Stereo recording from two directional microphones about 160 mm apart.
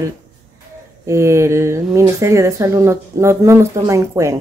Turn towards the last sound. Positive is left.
turn(degrees=-20)  # may be behind; listen again after turning